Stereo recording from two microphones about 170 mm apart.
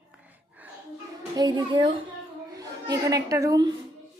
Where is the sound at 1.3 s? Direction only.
25° right (ahead or behind).